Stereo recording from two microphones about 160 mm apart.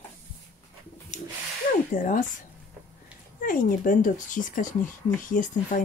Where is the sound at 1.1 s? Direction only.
45° left (ahead or behind).